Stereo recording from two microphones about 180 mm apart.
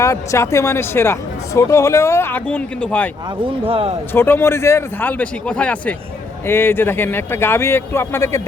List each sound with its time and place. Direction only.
0.0 s speech: 15° left (ahead or behind)
3.7 s speech: 30° right (ahead or behind)
4.1 s speech: 10° left (ahead or behind)